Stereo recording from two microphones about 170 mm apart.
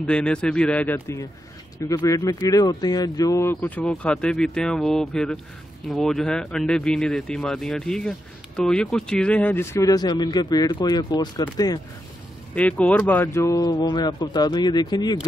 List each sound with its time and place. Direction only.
0.0 s speech: 5° left (ahead or behind); by 11.8 s 20° left (ahead or behind)
12.5 s speech: 10° left (ahead or behind); by 15.1 s 25° left (ahead or behind)